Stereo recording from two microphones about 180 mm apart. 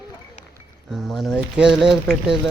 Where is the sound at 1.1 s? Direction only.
Centre (ahead or behind).